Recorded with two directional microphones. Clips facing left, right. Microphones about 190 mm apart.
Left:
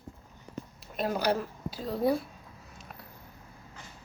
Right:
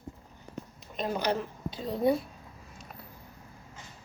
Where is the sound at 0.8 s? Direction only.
5° left (ahead or behind).